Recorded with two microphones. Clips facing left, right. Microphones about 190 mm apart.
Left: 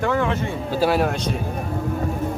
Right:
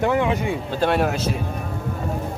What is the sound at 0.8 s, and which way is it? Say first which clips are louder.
Speech: left 1 dB; centre (ahead or behind).